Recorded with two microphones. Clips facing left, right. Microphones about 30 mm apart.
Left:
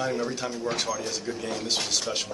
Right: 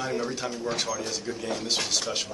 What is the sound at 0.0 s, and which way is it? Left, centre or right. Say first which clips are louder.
Speech: left 1 dB; centre.